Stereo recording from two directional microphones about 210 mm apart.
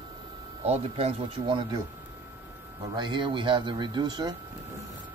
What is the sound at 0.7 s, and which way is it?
Speech, 30° right (ahead or behind).